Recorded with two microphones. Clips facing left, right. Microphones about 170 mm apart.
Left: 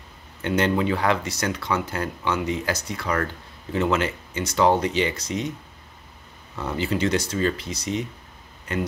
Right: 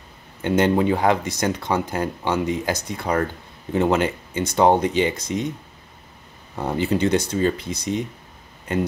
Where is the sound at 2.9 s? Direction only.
25° right (ahead or behind).